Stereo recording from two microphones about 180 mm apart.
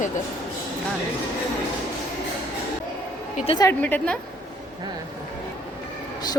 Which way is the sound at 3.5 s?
20° left (ahead or behind).